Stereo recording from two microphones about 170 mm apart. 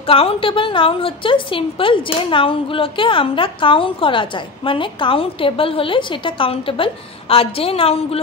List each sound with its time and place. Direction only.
0.0 s a woman's voice: 35° left (ahead or behind)